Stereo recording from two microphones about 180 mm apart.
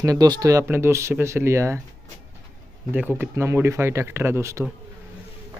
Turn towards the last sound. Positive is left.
turn(degrees=-15)  # may be behind; listen again after turning